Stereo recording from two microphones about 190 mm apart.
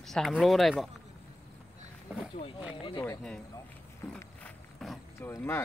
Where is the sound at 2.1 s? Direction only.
10° right (ahead or behind).